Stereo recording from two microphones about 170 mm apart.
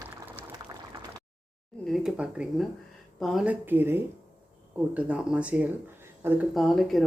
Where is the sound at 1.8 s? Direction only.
Centre (ahead or behind).